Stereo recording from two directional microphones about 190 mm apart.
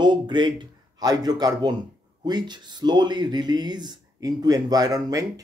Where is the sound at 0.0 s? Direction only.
25° right (ahead or behind).